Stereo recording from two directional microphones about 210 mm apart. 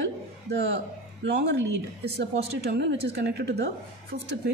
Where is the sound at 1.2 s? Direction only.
55° right (ahead or behind).